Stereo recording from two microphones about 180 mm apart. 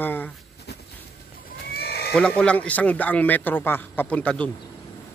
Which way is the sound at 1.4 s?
60° left (ahead or behind).